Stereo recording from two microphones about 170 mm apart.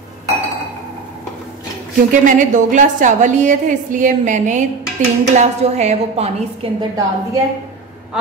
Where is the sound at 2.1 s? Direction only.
50° right (ahead or behind).